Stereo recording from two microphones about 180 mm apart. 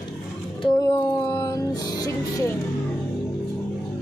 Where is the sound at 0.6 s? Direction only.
25° left (ahead or behind).